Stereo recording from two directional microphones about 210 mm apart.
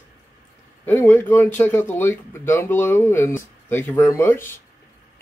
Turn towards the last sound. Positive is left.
turn(degrees=10)  # may be behind; listen again after turning